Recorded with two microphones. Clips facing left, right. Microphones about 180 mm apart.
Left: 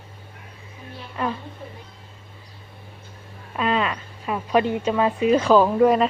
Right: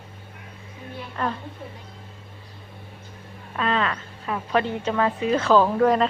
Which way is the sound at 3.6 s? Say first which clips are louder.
Left 2 dB; 15° left (ahead or behind).